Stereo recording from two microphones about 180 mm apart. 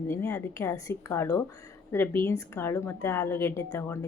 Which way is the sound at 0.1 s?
15° left (ahead or behind).